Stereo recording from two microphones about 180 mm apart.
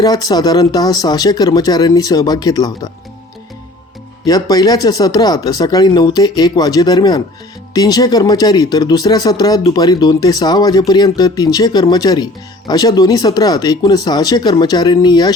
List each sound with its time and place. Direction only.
0.0 s speech: 20° left (ahead or behind)
4.3 s speech: 20° left (ahead or behind)